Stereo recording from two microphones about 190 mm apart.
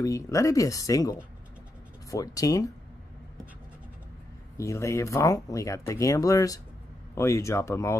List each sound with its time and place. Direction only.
0.0 s speech: 15° left (ahead or behind)
4.6 s speech: 15° left (ahead or behind)